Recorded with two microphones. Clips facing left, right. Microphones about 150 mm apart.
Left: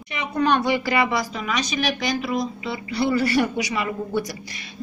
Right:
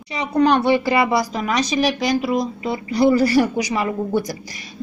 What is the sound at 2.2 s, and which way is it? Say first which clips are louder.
A woman's voice: right 4 dB; 40° right (ahead or behind).